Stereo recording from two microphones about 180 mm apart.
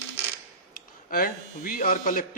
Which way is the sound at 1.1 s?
50° left (ahead or behind).